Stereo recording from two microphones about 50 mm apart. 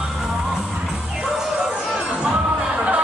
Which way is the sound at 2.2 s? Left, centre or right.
Centre.